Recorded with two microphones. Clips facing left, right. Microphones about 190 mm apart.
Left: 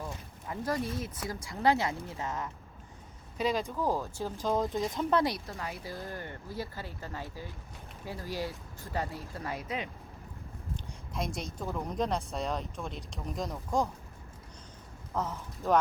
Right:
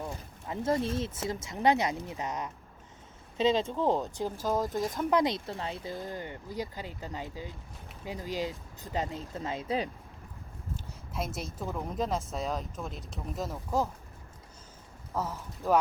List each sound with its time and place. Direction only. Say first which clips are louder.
0.0 s speech: right 2 dB; 20° right (ahead or behind)
4.4 s speech: left 1 dB; centre (ahead or behind)
5.1 s speech: right 2 dB; 20° right (ahead or behind)
11.1 s speech: even; 5° right (ahead or behind)
15.1 s speech: even; 10° right (ahead or behind)